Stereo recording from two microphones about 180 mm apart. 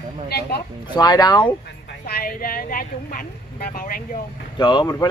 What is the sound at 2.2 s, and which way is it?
Speech, 55° left (ahead or behind).